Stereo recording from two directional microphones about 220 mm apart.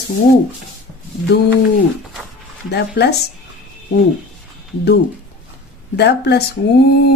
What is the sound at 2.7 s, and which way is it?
Speech, 50° left (ahead or behind).